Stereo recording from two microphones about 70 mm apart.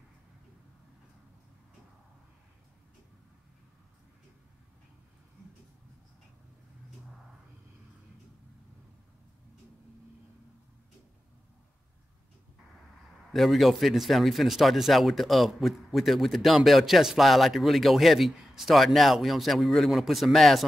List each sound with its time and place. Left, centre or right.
13.3 s a man's voice: centre